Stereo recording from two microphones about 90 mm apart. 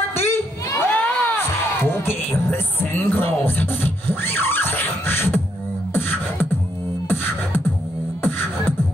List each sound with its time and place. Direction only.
0.1 s a sound: 25° left (ahead or behind)
0.7 s crowd: 20° left (ahead or behind)
1.9 s music: 25° left (ahead or behind)
5.9 s beatboxing: 25° left (ahead or behind)
8.2 s beatboxing: 25° left (ahead or behind)